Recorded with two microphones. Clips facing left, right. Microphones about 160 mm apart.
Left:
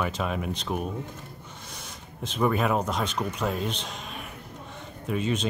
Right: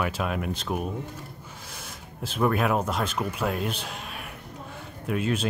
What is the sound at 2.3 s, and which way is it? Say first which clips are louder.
Speech: even; 5° right (ahead or behind).